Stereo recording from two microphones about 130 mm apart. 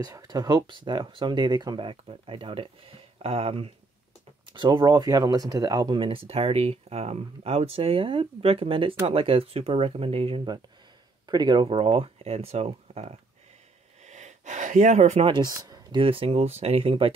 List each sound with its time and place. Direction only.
0.0 s speech: 30° right (ahead or behind); by 3.7 s 50° right (ahead or behind)
4.6 s speech: 35° right (ahead or behind)
11.2 s speech: 35° right (ahead or behind); by 13.2 s 50° right (ahead or behind)
14.0 s gasp: 65° right (ahead or behind)
15.2 s speech: 35° right (ahead or behind)
16.0 s speech: 45° right (ahead or behind)